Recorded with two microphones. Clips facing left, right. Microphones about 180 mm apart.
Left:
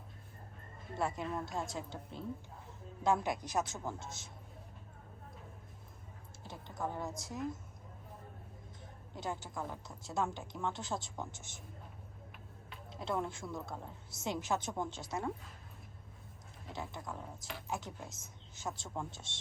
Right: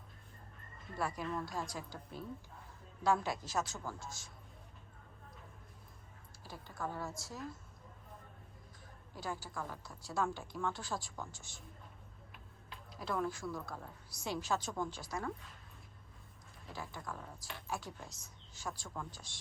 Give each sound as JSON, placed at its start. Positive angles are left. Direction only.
{"t": 0.9, "sound": "speech", "side_deg": 25}
{"t": 6.4, "sound": "speech", "side_deg": 20}
{"t": 9.1, "sound": "speech", "side_deg": 20}
{"t": 12.9, "sound": "speech", "side_deg": 25}
{"t": 16.7, "sound": "speech", "side_deg": 20}